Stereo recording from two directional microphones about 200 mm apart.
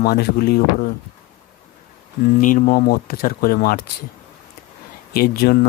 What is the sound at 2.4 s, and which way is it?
Speech, 40° left (ahead or behind).